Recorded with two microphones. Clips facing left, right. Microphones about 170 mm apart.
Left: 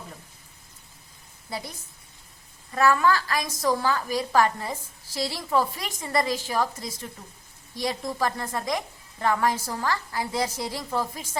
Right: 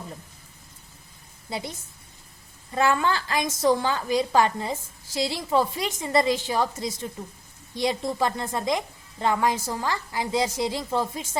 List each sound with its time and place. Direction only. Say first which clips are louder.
1.5 s a woman's voice: right 2 dB; 20° right (ahead or behind)
2.7 s a woman's voice: left 2 dB; 25° right (ahead or behind)